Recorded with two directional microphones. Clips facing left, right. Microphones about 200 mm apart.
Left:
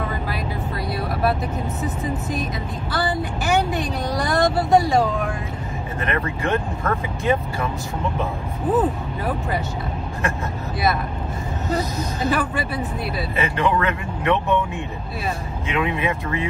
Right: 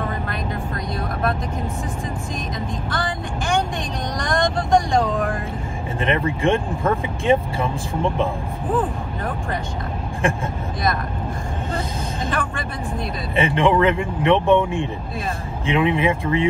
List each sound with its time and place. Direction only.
2.9 s speech: 5° left (ahead or behind)
5.9 s speech: 25° right (ahead or behind)
8.7 s speech: 5° left (ahead or behind)
11.7 s speech: 5° left (ahead or behind)
13.4 s speech: 25° right (ahead or behind)